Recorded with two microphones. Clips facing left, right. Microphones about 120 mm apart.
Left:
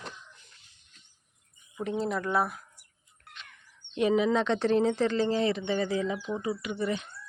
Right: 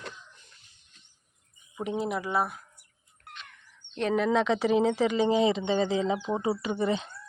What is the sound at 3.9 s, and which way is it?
Speech, 5° left (ahead or behind).